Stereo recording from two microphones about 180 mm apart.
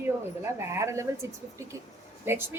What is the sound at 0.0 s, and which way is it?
A woman's voice, 15° right (ahead or behind).